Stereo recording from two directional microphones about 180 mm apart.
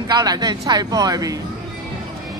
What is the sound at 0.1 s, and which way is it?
Speech, 20° right (ahead or behind).